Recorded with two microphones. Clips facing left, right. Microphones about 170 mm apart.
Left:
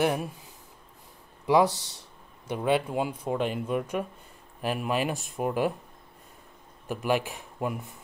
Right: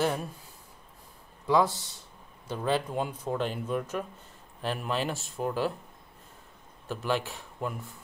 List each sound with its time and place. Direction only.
0.0 s speech: 15° left (ahead or behind)
1.7 s speech: 75° left (ahead or behind)
2.4 s speech: 15° left (ahead or behind)
6.9 s speech: 15° left (ahead or behind)